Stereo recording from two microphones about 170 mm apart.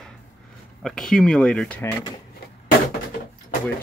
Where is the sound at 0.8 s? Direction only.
5° left (ahead or behind).